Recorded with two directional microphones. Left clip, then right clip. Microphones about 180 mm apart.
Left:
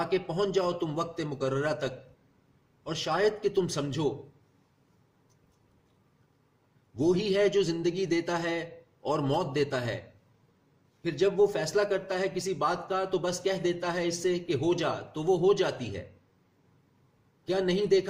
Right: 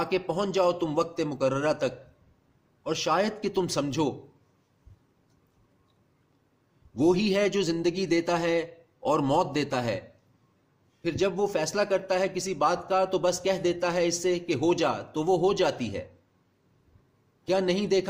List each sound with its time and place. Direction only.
0.0 s a man's voice: 50° right (ahead or behind)
6.9 s a man's voice: 55° right (ahead or behind)
11.0 s a man's voice: 55° right (ahead or behind)
17.4 s a man's voice: 55° right (ahead or behind)